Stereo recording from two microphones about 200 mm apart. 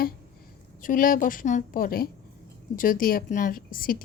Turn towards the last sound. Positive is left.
turn(degrees=45)  # may be behind; listen again after turning